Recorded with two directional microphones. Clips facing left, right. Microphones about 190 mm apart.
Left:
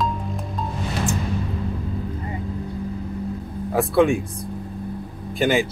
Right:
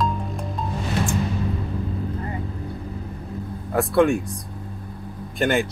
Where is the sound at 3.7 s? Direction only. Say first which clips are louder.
Even; centre (ahead or behind).